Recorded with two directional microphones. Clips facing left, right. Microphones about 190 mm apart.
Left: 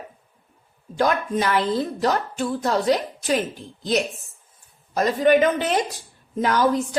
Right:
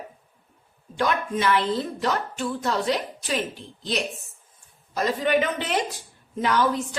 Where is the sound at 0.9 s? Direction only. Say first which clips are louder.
Left 3 dB; 40° left (ahead or behind).